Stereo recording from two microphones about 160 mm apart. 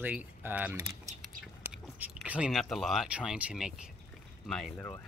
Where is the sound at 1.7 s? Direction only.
5° right (ahead or behind).